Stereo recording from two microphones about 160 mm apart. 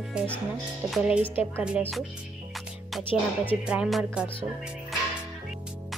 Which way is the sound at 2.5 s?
Centre (ahead or behind).